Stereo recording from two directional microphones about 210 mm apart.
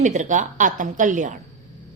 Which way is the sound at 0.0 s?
35° right (ahead or behind).